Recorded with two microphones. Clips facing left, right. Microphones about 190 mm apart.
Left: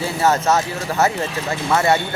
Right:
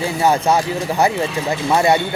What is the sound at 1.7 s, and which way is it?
Speech, 15° right (ahead or behind).